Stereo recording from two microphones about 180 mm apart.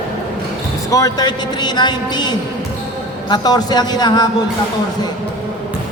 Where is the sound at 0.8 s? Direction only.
20° left (ahead or behind).